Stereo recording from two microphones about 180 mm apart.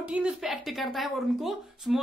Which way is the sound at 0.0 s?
5° right (ahead or behind).